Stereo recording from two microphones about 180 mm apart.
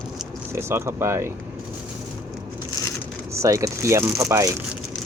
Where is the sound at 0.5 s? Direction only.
15° right (ahead or behind).